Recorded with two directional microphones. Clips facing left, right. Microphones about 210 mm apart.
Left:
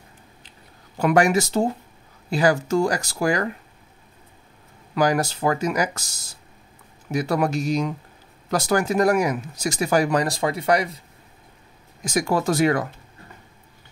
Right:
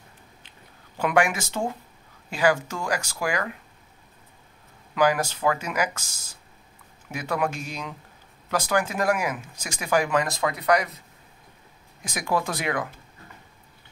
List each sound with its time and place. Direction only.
0.9 s speech: 40° left (ahead or behind)
4.9 s speech: 40° left (ahead or behind)
12.0 s speech: 45° left (ahead or behind)